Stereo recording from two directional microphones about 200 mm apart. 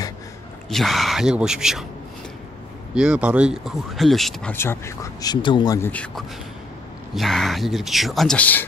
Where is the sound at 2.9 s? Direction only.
5° right (ahead or behind).